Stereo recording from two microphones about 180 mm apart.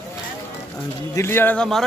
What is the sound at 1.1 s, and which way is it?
Speech, 15° left (ahead or behind).